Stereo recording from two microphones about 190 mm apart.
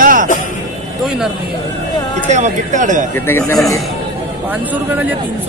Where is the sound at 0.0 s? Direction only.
45° right (ahead or behind).